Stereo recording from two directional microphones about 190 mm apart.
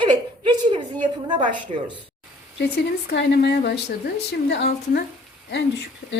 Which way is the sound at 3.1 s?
60° left (ahead or behind).